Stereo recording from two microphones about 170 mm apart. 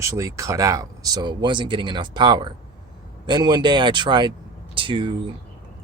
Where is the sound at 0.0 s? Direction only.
20° right (ahead or behind).